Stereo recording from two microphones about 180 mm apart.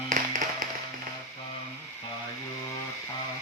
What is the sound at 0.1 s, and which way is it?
Music, 45° right (ahead or behind).